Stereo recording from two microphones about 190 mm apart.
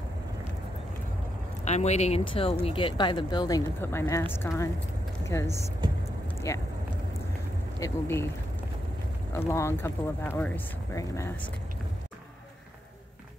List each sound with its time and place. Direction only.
1.6 s speech: 35° left (ahead or behind); by 5.7 s 15° left (ahead or behind)
6.2 s vehicle: 15° left (ahead or behind)
7.8 s speech: 15° left (ahead or behind)
9.3 s speech: 15° left (ahead or behind)